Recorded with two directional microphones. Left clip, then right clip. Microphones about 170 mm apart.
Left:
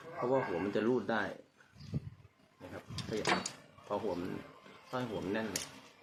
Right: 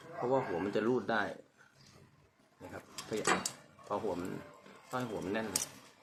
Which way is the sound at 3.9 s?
10° left (ahead or behind).